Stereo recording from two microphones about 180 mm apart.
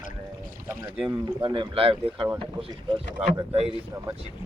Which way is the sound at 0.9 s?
30° right (ahead or behind).